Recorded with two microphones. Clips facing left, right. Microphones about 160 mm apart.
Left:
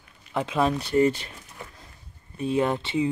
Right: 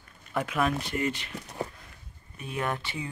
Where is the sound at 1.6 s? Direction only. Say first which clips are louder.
Right 9 dB; 35° right (ahead or behind).